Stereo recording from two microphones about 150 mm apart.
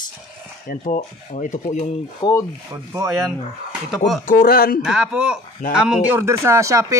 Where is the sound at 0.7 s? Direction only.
60° left (ahead or behind).